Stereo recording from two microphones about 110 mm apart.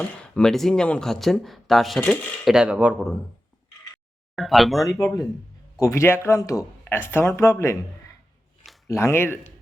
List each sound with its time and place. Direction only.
0.0 s speech: 10° left (ahead or behind); by 3.1 s 10° right (ahead or behind)
4.4 s speech: centre (ahead or behind)
4.9 s speech: 30° left (ahead or behind)
8.9 s speech: 25° left (ahead or behind)